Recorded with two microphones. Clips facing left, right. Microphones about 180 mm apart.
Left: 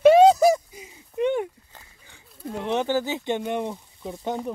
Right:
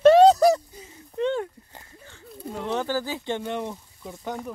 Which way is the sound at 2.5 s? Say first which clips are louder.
Left 3 dB; 20° left (ahead or behind).